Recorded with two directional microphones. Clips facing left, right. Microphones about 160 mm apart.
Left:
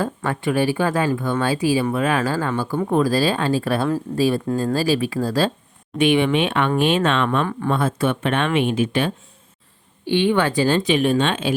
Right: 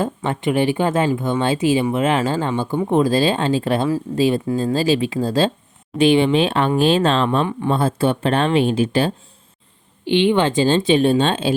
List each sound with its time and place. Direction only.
0.0 s speech: 20° right (ahead or behind)
10.1 s speech: 20° right (ahead or behind)